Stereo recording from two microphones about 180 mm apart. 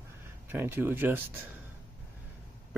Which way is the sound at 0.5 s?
10° right (ahead or behind).